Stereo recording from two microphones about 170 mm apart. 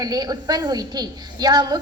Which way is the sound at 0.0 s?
20° right (ahead or behind).